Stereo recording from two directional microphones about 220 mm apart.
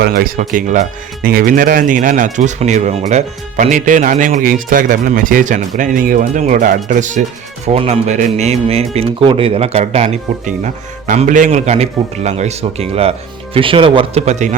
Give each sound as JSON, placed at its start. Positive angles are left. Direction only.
{"t": 0.0, "sound": "speech", "side_deg": -45}